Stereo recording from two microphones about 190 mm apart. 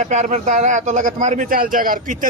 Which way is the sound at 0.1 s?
40° right (ahead or behind).